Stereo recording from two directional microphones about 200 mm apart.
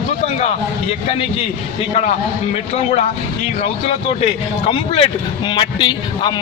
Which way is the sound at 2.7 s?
35° left (ahead or behind).